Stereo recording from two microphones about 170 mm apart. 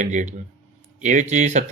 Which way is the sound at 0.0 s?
45° right (ahead or behind).